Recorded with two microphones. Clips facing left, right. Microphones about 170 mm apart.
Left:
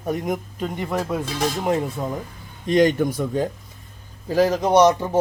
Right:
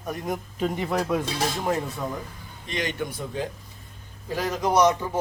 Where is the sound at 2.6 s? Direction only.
45° left (ahead or behind).